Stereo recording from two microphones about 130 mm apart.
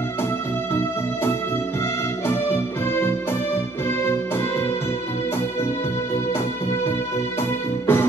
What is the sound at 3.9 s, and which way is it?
Music, 20° left (ahead or behind).